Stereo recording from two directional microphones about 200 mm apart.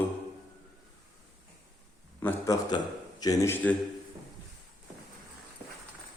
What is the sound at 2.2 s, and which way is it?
A man's voice, 20° left (ahead or behind).